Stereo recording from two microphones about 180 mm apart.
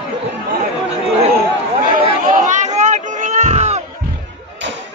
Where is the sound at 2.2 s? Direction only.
45° right (ahead or behind).